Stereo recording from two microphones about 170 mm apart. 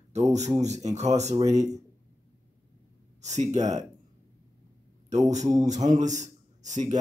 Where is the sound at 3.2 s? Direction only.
45° right (ahead or behind).